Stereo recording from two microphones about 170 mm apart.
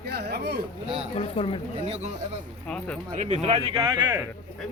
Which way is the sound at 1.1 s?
35° left (ahead or behind).